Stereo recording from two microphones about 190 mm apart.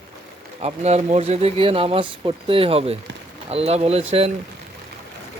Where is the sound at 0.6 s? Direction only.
35° right (ahead or behind).